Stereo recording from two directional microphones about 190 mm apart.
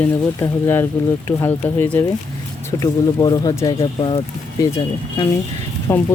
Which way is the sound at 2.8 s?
20° left (ahead or behind).